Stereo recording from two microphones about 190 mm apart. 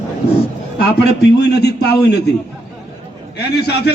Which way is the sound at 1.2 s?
60° left (ahead or behind).